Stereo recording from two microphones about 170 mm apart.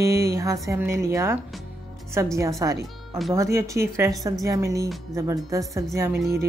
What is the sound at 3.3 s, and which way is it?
A woman's voice, 20° right (ahead or behind).